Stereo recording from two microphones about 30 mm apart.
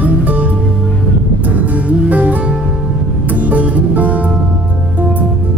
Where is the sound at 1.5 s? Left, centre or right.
Right.